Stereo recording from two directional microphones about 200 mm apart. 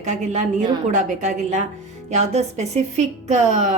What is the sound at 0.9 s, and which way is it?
A woman's voice, 40° right (ahead or behind).